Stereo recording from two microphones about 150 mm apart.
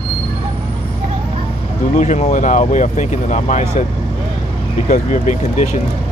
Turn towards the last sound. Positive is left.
turn(degrees=55)  # may be behind; listen again after turning